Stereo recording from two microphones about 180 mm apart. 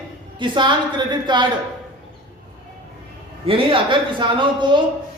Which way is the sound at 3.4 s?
30° right (ahead or behind).